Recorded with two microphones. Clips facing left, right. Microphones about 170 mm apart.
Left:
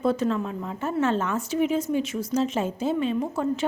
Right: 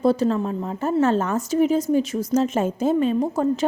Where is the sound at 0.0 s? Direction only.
35° right (ahead or behind).